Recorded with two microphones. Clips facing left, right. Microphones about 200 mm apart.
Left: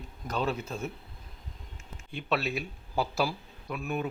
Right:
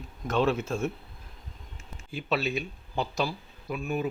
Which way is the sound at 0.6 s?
25° right (ahead or behind).